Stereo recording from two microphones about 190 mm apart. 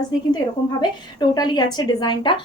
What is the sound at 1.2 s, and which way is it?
A woman's voice, 25° left (ahead or behind).